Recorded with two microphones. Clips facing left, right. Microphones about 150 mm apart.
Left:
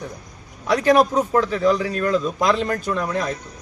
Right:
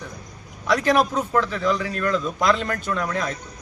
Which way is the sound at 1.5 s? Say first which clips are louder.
Left 4 dB; 35° left (ahead or behind).